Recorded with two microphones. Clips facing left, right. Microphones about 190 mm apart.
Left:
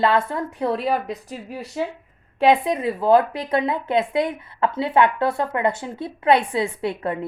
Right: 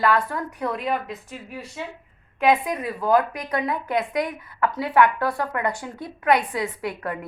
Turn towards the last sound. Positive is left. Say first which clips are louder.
# left 4 dB
turn(degrees=25)  # may be behind; listen again after turning